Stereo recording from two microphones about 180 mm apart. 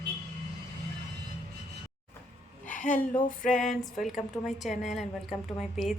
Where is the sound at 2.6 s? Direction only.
45° left (ahead or behind).